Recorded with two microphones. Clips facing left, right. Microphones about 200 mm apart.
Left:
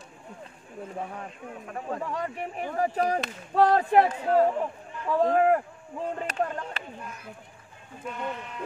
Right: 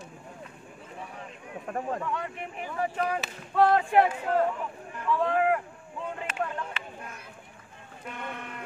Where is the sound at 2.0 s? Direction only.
35° left (ahead or behind).